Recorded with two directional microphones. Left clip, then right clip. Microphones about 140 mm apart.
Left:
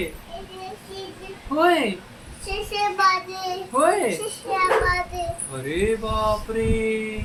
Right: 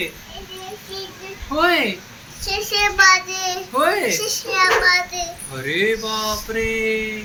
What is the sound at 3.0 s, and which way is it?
Speech, 15° left (ahead or behind).